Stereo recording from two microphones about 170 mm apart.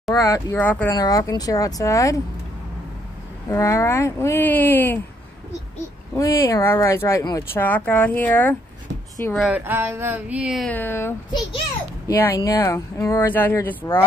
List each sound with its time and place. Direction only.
0.1 s speech: 20° left (ahead or behind)
0.9 s speech: 20° left (ahead or behind)
3.4 s speech: 20° left (ahead or behind)
6.1 s speech: 20° left (ahead or behind)
9.3 s speech: centre (ahead or behind)
9.6 s a sound: 15° right (ahead or behind)
10.7 s speech: 10° left (ahead or behind)
12.2 s speech: 15° left (ahead or behind)